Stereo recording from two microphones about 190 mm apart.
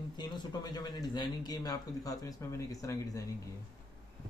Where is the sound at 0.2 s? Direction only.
25° left (ahead or behind).